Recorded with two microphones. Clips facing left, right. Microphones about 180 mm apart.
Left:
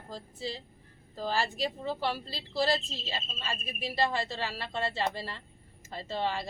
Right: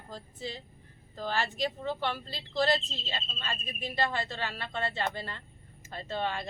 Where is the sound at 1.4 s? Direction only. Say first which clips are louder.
Even; 35° left (ahead or behind).